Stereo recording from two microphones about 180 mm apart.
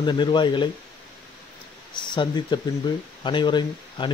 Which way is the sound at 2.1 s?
25° left (ahead or behind).